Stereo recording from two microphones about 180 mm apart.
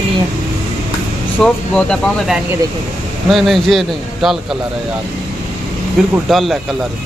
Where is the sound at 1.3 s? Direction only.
5° left (ahead or behind).